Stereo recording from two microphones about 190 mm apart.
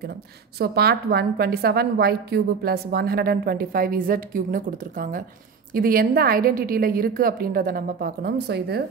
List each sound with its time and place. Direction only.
0.6 s a woman's voice: 55° right (ahead or behind)